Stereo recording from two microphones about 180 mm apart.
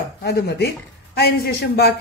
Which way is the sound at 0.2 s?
65° left (ahead or behind).